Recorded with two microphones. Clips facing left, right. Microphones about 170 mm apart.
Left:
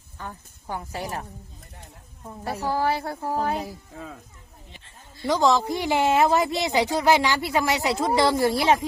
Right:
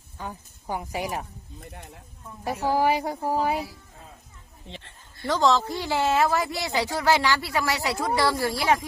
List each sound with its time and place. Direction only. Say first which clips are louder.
0.2 s speech: right 1 dB; 15° right (ahead or behind)
2.4 s speech: right 2 dB; 15° right (ahead or behind)
4.7 s a sound: right 8 dB; 65° right (ahead or behind)
5.2 s speech: left 1 dB; 15° left (ahead or behind)